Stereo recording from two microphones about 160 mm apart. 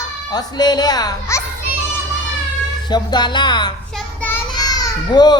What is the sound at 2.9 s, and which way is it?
Speech, 25° left (ahead or behind).